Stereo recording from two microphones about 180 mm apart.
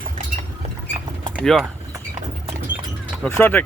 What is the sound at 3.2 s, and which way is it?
Speech, 10° left (ahead or behind).